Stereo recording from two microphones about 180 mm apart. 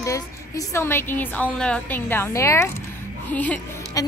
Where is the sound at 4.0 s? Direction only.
20° left (ahead or behind).